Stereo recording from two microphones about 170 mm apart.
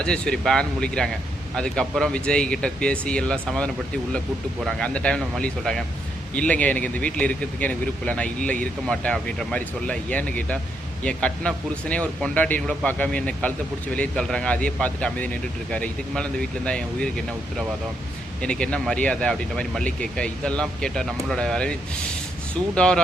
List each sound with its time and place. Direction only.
0.0 s speech: 5° left (ahead or behind)
18.4 s speech: 5° left (ahead or behind)